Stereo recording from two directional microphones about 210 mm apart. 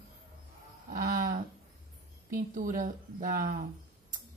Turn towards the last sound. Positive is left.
turn(degrees=-40)  # may be behind; listen again after turning